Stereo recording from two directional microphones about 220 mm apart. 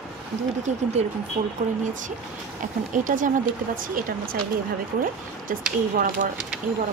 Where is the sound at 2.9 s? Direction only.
35° right (ahead or behind).